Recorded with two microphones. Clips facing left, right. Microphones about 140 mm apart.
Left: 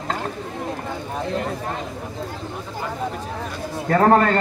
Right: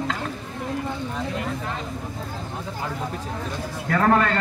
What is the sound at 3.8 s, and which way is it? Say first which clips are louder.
Speech: left 4 dB; 35° left (ahead or behind).